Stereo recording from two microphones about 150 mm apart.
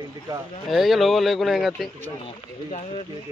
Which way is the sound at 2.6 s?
50° left (ahead or behind).